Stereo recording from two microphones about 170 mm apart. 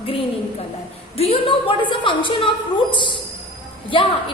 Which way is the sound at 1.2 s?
35° left (ahead or behind).